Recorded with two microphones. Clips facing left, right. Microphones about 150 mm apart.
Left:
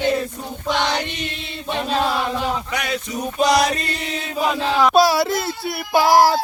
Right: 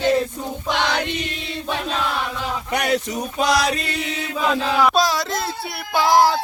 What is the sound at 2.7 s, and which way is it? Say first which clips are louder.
Speech: right 4 dB; 65° right (ahead or behind).